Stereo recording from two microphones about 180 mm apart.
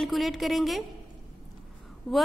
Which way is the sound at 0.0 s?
Centre (ahead or behind).